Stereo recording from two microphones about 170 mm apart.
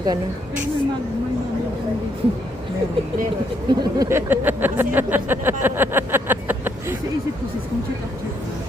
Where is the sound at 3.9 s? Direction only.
20° right (ahead or behind).